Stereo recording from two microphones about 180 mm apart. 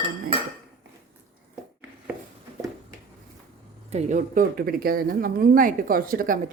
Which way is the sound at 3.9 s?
45° right (ahead or behind).